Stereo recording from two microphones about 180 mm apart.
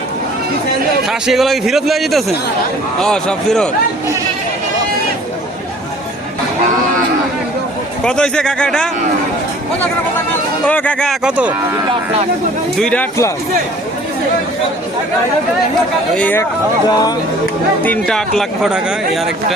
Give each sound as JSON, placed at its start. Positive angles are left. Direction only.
{"t": 1.0, "sound": "a man's voice", "side_deg": 0}
{"t": 8.0, "sound": "a man's voice", "side_deg": 5}
{"t": 10.7, "sound": "a man's voice", "side_deg": 5}
{"t": 12.8, "sound": "speech", "side_deg": 10}
{"t": 16.1, "sound": "speech", "side_deg": 10}
{"t": 16.9, "sound": "speech", "side_deg": 20}
{"t": 17.8, "sound": "a man's voice", "side_deg": 5}